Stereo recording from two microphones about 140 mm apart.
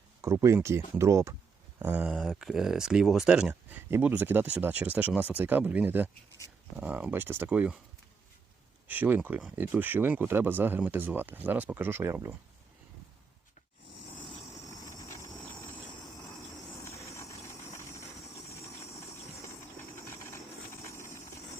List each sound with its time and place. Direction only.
0.2 s speech: 20° right (ahead or behind)
1.8 s speech: 10° right (ahead or behind)
3.5 s speech: 15° right (ahead or behind)
8.9 s speech: 15° right (ahead or behind)
14.5 s vehicle: 20° left (ahead or behind)
17.1 s vehicle: 20° left (ahead or behind)
17.4 s a sound: 20° left (ahead or behind)
20.1 s vehicle: 20° left (ahead or behind)